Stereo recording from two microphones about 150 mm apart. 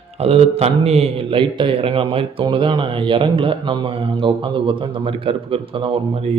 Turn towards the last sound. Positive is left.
turn(degrees=-40)  # may be behind; listen again after turning